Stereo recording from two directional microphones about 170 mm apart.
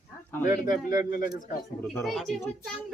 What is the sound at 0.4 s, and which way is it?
Speech, 50° left (ahead or behind).